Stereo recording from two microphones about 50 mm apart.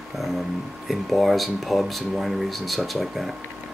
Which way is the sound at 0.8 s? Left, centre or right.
Centre.